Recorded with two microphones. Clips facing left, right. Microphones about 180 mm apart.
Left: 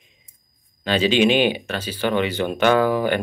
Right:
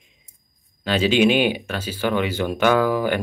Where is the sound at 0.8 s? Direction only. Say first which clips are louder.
Even; 10° right (ahead or behind).